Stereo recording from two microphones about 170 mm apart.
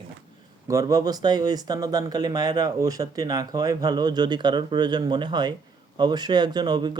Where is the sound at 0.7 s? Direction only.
20° right (ahead or behind).